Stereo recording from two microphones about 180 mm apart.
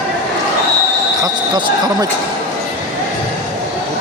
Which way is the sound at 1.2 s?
20° right (ahead or behind).